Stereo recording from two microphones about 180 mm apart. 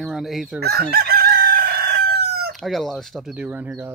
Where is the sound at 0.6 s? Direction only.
60° right (ahead or behind).